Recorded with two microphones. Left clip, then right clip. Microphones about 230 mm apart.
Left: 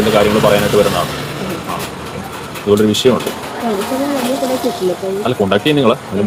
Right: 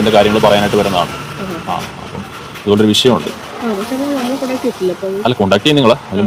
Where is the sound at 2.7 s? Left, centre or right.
Right.